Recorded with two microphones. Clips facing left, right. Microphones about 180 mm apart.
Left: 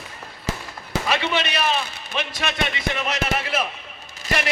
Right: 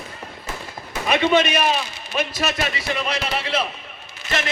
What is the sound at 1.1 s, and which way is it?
Speech, 15° right (ahead or behind).